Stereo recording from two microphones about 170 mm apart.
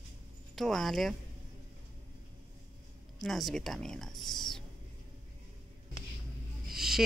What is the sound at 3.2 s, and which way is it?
Speech, centre (ahead or behind).